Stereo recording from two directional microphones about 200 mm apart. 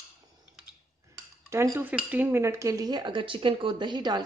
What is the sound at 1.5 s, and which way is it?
Speech, 15° right (ahead or behind).